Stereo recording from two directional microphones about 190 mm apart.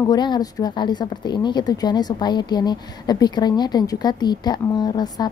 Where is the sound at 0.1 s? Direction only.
20° left (ahead or behind).